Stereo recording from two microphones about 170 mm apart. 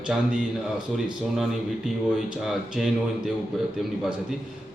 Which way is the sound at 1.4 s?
Centre (ahead or behind).